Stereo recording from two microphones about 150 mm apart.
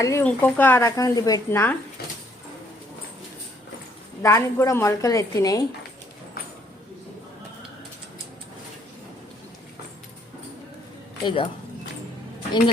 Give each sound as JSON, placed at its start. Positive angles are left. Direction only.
{"t": 0.0, "sound": "a woman's voice", "side_deg": 20}
{"t": 4.2, "sound": "a woman's voice", "side_deg": 20}
{"t": 11.2, "sound": "speech", "side_deg": 35}